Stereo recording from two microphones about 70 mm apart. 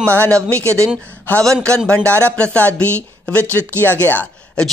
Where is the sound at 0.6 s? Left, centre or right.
Right.